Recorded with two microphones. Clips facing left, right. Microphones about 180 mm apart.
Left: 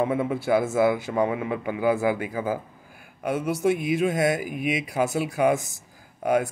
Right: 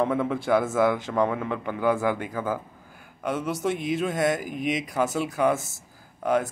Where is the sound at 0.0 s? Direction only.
10° left (ahead or behind).